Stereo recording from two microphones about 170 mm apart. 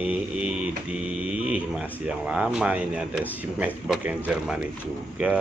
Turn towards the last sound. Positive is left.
turn(degrees=-5)  # may be behind; listen again after turning